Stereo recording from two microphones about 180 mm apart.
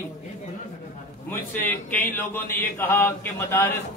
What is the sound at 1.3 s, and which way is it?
A man's voice, 10° left (ahead or behind).